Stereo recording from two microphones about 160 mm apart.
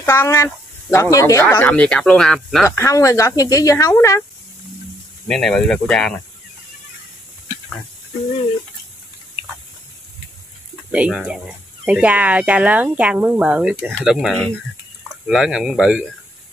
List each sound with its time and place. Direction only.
0.0 s speech: 15° left (ahead or behind)
1.5 s speech: 10° left (ahead or behind)
2.6 s speech: 15° left (ahead or behind)
5.3 s speech: 5° left (ahead or behind)
10.9 s speech: 5° right (ahead or behind)